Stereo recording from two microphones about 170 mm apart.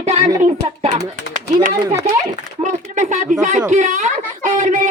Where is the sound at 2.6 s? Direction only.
45° right (ahead or behind).